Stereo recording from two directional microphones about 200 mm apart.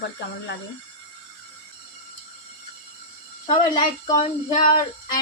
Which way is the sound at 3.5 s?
35° left (ahead or behind).